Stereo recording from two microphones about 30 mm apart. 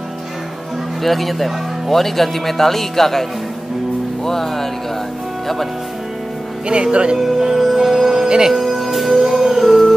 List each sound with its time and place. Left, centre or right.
1.0 s speech: centre
6.7 s speech: right
7.3 s speech: centre
8.5 s music: centre
9.4 s howl: centre